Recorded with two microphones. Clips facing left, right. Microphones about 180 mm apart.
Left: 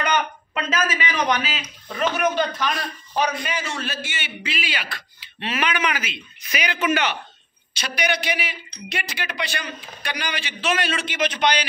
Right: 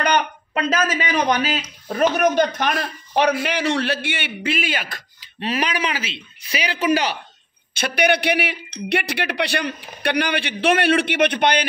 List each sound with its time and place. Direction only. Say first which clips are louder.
0.6 s speech: right 4 dB; 40° right (ahead or behind)
2.5 s a man's voice: right 3 dB; 60° right (ahead or behind); by 7.2 s 35° right (ahead or behind)
7.7 s a man's voice: right 6 dB; 55° right (ahead or behind)